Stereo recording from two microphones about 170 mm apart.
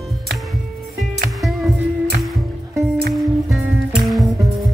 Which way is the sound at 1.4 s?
Centre (ahead or behind).